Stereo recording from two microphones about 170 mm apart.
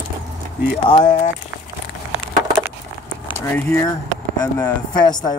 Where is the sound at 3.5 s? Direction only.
10° left (ahead or behind).